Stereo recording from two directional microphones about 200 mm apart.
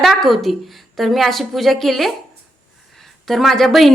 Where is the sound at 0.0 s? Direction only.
Centre (ahead or behind).